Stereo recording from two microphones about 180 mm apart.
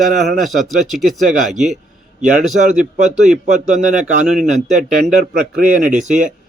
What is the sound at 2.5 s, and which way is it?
Speech, 65° right (ahead or behind).